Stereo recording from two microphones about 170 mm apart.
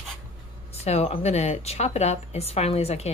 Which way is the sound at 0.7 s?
40° left (ahead or behind).